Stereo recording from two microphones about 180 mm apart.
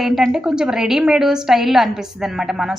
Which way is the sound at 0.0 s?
Centre (ahead or behind).